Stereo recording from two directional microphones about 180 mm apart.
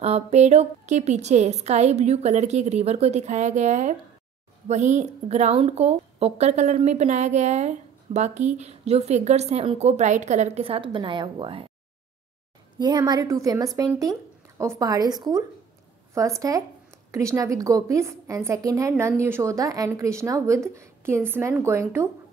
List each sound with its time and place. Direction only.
0.0 s a woman's voice: 35° right (ahead or behind)
12.7 s a woman's voice: 25° right (ahead or behind)